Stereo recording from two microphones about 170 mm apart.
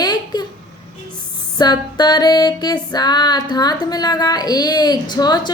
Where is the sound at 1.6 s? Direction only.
25° left (ahead or behind).